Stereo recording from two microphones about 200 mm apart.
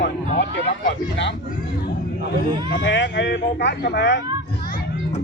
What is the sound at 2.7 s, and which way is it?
Speech, 55° left (ahead or behind).